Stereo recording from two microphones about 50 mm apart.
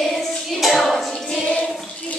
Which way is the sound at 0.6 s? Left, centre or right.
Centre.